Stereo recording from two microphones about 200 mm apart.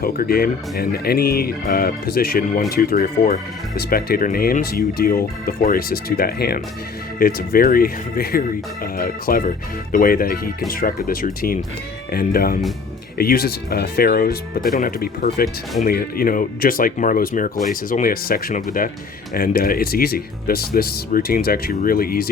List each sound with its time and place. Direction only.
0.0 s speech: 50° left (ahead or behind)